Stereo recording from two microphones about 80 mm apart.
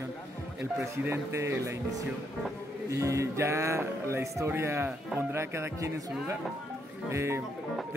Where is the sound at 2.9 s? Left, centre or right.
Right.